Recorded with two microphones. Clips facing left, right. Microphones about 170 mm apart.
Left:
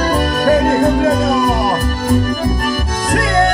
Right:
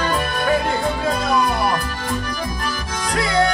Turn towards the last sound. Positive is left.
turn(degrees=50)  # may be behind; listen again after turning